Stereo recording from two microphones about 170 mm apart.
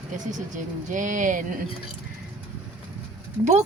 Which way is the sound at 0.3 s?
45° right (ahead or behind).